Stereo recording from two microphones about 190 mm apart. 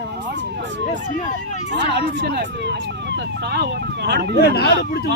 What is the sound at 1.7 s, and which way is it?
Speech, 65° right (ahead or behind).